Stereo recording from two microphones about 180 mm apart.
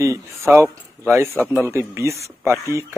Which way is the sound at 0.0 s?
15° right (ahead or behind).